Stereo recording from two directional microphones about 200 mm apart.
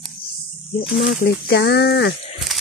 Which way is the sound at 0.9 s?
55° left (ahead or behind).